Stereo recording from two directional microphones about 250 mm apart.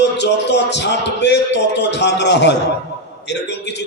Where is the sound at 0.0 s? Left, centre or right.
Left.